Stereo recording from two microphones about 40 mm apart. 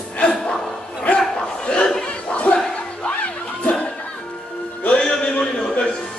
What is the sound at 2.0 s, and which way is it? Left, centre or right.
Music, left.